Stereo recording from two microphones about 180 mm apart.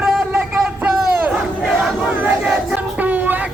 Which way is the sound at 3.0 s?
10° right (ahead or behind).